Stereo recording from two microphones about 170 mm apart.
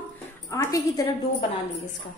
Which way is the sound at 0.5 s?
20° left (ahead or behind).